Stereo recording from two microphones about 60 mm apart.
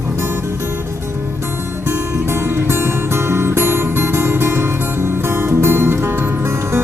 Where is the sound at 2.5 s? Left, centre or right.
Right.